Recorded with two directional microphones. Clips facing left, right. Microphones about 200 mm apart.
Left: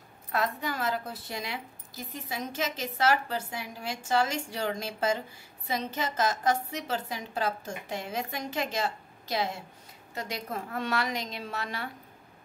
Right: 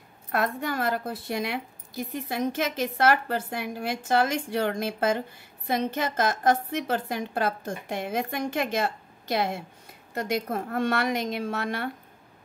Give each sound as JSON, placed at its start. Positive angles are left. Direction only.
{"t": 0.3, "sound": "a woman's voice", "side_deg": -55}